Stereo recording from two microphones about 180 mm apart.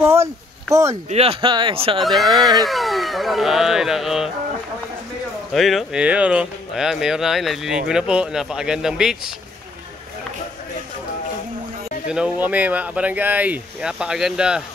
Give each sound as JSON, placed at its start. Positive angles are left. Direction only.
{"t": 0.0, "sound": "speech", "side_deg": -15}
{"t": 1.1, "sound": "speech", "side_deg": -35}
{"t": 2.0, "sound": "speech", "side_deg": 0}
{"t": 2.3, "sound": "speech", "side_deg": -20}
{"t": 2.6, "sound": "speech", "side_deg": 0}
{"t": 5.5, "sound": "speech", "side_deg": 0}
{"t": 12.1, "sound": "speech", "side_deg": -5}